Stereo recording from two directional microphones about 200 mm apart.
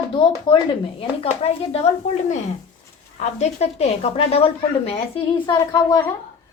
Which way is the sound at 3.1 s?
35° left (ahead or behind).